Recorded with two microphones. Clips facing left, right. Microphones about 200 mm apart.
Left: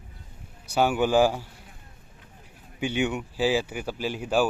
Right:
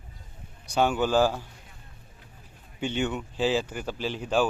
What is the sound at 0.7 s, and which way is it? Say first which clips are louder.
Speech: left 2 dB; 5° left (ahead or behind).